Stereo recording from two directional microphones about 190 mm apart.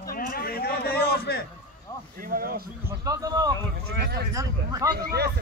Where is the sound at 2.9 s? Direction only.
20° right (ahead or behind).